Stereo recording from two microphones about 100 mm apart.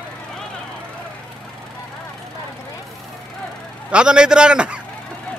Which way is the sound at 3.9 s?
10° right (ahead or behind).